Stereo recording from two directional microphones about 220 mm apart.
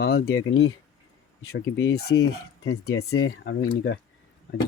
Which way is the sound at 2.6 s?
80° left.